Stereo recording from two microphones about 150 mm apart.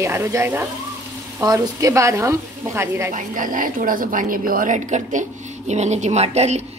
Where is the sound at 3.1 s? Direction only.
60° right (ahead or behind).